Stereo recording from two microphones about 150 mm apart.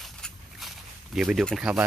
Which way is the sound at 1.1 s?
Centre (ahead or behind).